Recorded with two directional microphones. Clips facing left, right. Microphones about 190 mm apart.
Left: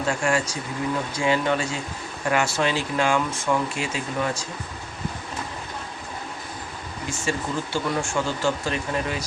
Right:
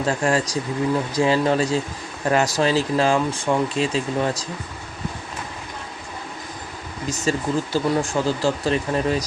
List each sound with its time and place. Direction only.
0.0 s speech: 35° right (ahead or behind)
7.1 s speech: 40° right (ahead or behind)